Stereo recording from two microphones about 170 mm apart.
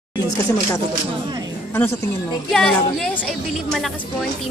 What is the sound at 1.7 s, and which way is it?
A woman's voice, 10° left (ahead or behind).